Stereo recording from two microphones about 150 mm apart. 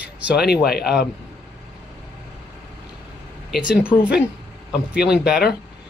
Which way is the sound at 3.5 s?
5° right (ahead or behind).